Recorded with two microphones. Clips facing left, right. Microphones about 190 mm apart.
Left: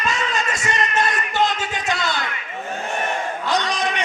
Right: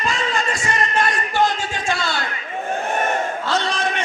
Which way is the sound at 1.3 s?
20° left (ahead or behind).